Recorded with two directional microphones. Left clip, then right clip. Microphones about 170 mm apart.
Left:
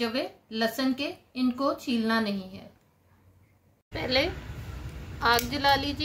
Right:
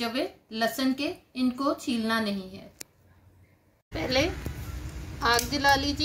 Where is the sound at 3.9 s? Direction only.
Centre (ahead or behind).